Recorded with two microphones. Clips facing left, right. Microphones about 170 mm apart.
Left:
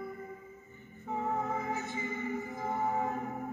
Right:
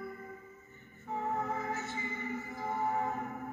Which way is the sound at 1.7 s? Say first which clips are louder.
Left 2 dB; 20° left (ahead or behind).